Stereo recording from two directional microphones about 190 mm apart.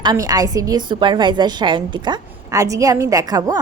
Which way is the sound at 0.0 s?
20° right (ahead or behind).